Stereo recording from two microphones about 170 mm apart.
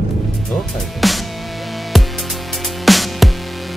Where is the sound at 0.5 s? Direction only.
Centre (ahead or behind).